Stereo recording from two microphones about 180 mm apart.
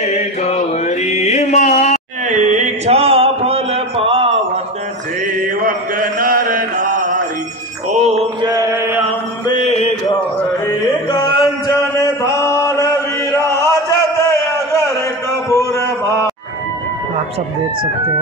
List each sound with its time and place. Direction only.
0.0 s mantra: 40° left (ahead or behind)
2.2 s a sound: 45° right (ahead or behind)
5.4 s mantra: 50° right (ahead or behind)
7.9 s mantra: 35° right (ahead or behind)
8.4 s mantra: 20° right (ahead or behind)
11.1 s chant: 25° left (ahead or behind)
15.5 s a sound: 15° left (ahead or behind)